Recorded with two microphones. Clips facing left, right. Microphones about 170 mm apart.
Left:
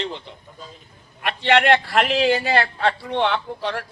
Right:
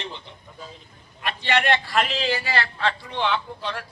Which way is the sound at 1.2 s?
60° left (ahead or behind).